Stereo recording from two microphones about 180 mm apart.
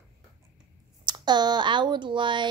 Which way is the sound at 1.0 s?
25° right (ahead or behind).